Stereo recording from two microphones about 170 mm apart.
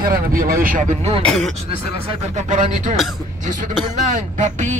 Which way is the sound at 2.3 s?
45° right (ahead or behind).